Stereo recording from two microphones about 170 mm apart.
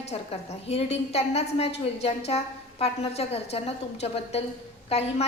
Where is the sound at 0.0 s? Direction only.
40° left (ahead or behind).